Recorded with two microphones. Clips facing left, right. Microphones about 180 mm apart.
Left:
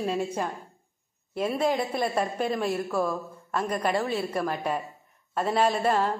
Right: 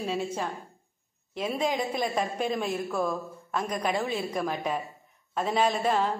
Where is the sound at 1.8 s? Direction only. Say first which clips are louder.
Left 2 dB; 5° left (ahead or behind).